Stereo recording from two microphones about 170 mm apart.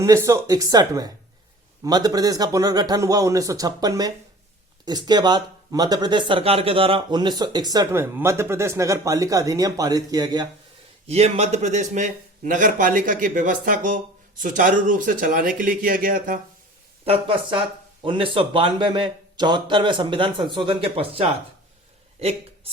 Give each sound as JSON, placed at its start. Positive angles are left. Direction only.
{"t": 0.0, "sound": "speech", "side_deg": -15}
{"t": 11.0, "sound": "speech", "side_deg": -40}
{"t": 17.1, "sound": "speech", "side_deg": -30}